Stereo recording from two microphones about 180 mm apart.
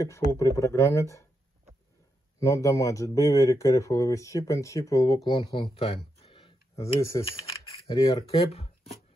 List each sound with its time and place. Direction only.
0.0 s speech: 15° left (ahead or behind)
2.4 s speech: 15° left (ahead or behind)
8.2 s speech: 35° left (ahead or behind)